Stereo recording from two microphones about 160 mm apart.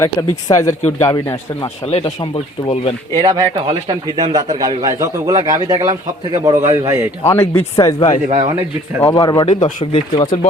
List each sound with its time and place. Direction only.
0.0 s speech: 20° left (ahead or behind)
3.2 s speech: 25° right (ahead or behind)
6.5 s a man's voice: 40° right (ahead or behind)
6.8 s a man's voice: 15° right (ahead or behind)
7.3 s speech: 15° left (ahead or behind); by 10.5 s 35° left (ahead or behind)